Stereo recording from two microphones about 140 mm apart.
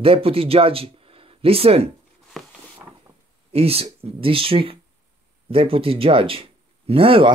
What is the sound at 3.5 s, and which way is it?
Speech, 45° right (ahead or behind).